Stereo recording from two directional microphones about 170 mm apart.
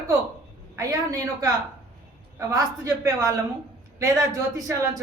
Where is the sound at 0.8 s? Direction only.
20° right (ahead or behind).